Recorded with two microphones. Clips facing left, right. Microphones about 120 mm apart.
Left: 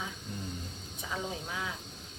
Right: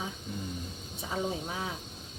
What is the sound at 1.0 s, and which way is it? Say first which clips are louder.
Speech: right 4 dB; 35° right (ahead or behind).